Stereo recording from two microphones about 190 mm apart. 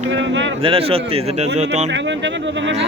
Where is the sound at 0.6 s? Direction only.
30° right (ahead or behind).